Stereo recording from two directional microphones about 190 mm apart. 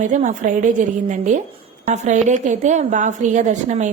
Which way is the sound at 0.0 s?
40° right (ahead or behind).